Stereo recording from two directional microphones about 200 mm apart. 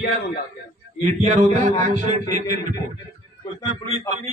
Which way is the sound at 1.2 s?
35° right (ahead or behind).